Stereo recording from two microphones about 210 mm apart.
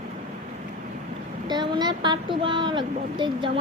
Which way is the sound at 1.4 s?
20° right (ahead or behind).